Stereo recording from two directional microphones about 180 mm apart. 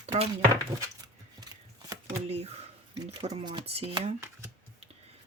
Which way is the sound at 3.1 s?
35° right (ahead or behind).